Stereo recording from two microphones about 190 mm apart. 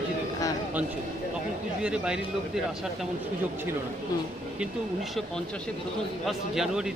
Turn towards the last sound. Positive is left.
turn(degrees=0)  # may be behind; listen again after turning